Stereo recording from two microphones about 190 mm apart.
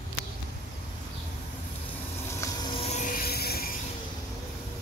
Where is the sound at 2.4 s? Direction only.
20° left (ahead or behind); by 3.7 s 55° left (ahead or behind).